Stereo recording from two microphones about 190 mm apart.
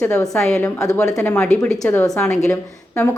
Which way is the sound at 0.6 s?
15° left (ahead or behind).